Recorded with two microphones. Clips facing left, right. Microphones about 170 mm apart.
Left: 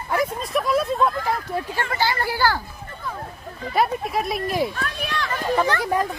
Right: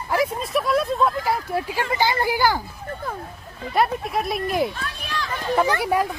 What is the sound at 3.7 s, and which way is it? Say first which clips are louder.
Speech: even; centre (ahead or behind).